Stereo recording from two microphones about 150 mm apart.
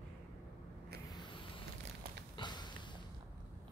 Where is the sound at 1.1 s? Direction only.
35° left (ahead or behind).